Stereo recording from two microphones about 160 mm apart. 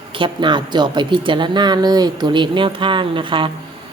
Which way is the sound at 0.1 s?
30° right (ahead or behind).